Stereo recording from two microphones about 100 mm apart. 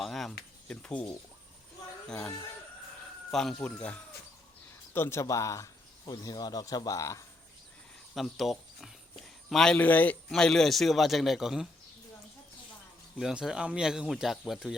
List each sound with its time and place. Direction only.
0.0 s speech: centre (ahead or behind)
3.3 s speech: 5° left (ahead or behind)
4.9 s speech: 25° left (ahead or behind)
8.1 s speech: centre (ahead or behind); by 10.2 s 15° left (ahead or behind)
10.2 s speech: 5° left (ahead or behind)
13.1 s speech: 5° right (ahead or behind)